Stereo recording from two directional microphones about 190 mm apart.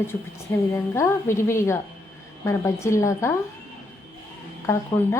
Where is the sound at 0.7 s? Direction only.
15° left (ahead or behind).